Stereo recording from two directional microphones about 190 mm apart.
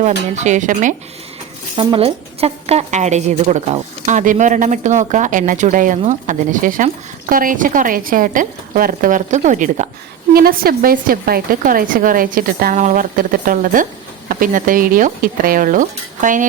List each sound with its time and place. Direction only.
0.3 s a woman's voice: 40° right (ahead or behind)
1.7 s a woman's voice: 25° right (ahead or behind)
10.3 s a woman's voice: 50° right (ahead or behind)